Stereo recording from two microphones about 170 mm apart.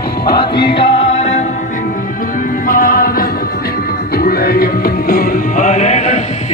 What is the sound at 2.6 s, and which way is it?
Music, 55° left (ahead or behind).